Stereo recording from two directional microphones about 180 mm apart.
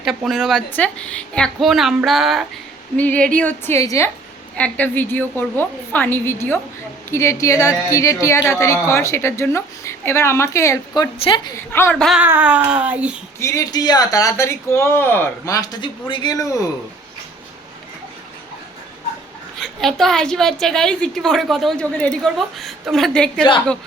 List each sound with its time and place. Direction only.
0.0 s a woman's voice: centre (ahead or behind); by 11.1 s 15° left (ahead or behind)
11.2 s speech: 30° left (ahead or behind)
11.7 s a woman's voice: 10° left (ahead or behind)
12.0 s a sound: 5° right (ahead or behind)
13.4 s speech: 20° left (ahead or behind)
19.5 s a woman's voice: centre (ahead or behind)